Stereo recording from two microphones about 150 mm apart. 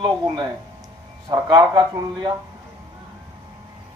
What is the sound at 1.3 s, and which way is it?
Speech, 30° right (ahead or behind).